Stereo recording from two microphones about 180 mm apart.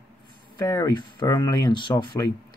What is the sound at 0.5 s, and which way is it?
Speech, 20° left (ahead or behind).